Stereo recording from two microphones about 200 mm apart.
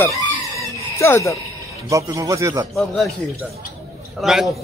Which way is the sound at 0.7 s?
15° left (ahead or behind).